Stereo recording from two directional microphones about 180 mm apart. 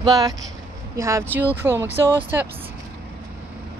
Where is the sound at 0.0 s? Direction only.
20° right (ahead or behind).